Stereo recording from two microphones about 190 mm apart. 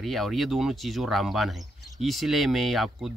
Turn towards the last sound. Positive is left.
turn(degrees=0)  # may be behind; listen again after turning